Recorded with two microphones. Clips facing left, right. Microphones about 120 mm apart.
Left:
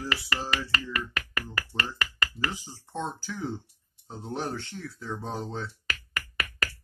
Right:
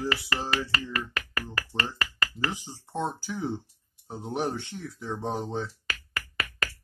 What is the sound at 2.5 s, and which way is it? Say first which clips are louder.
Speech: right 2 dB; 20° right (ahead or behind).